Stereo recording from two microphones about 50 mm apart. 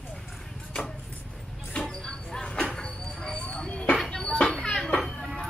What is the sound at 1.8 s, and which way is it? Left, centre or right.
Dog, centre.